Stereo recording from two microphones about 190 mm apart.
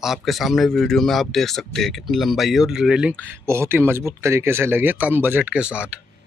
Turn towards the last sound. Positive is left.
turn(degrees=-5)  # may be behind; listen again after turning